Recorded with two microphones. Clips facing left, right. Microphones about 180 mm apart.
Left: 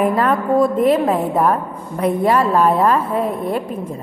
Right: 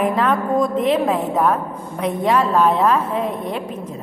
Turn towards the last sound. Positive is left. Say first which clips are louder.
# left 2 dB
turn(degrees=5)  # may be behind; listen again after turning